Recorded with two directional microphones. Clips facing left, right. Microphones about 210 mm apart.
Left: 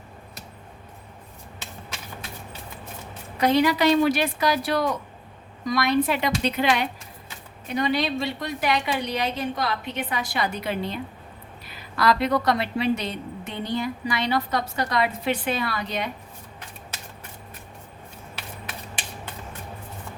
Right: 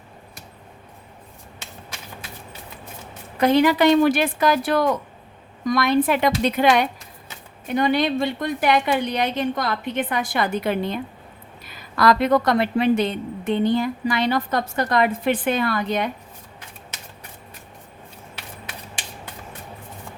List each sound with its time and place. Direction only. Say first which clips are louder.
3.3 s a woman's voice: right 3 dB; 50° right (ahead or behind)
11.9 s a woman's voice: right 4 dB; 50° right (ahead or behind)